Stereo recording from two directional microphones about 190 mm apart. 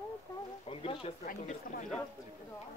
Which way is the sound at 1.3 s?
45° left (ahead or behind).